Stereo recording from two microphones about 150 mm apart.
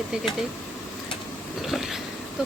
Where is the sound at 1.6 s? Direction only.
Centre (ahead or behind).